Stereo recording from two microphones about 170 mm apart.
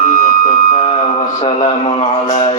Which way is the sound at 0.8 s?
35° left (ahead or behind).